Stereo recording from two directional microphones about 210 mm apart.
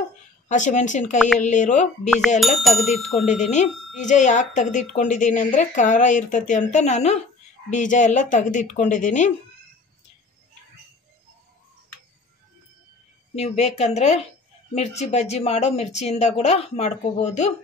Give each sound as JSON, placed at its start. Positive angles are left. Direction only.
{"t": 0.5, "sound": "a woman's voice", "side_deg": 35}
{"t": 2.0, "sound": "a sound", "side_deg": 5}
{"t": 3.6, "sound": "a woman's voice", "side_deg": 35}
{"t": 13.3, "sound": "a woman's voice", "side_deg": 30}